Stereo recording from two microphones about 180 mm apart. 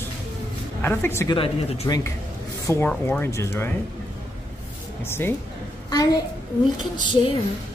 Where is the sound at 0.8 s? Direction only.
15° left (ahead or behind).